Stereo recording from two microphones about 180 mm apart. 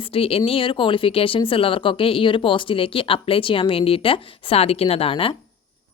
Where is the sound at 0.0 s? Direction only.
30° left (ahead or behind).